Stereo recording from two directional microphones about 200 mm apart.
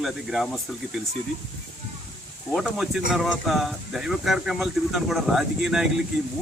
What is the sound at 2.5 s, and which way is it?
Speech, centre (ahead or behind).